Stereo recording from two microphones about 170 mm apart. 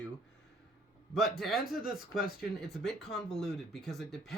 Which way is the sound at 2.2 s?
60° left (ahead or behind).